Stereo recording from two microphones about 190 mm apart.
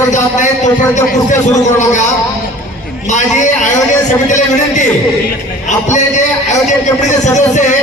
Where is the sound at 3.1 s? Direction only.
40° left (ahead or behind).